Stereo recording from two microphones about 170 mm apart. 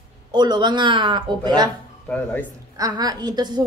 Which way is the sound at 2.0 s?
10° left (ahead or behind).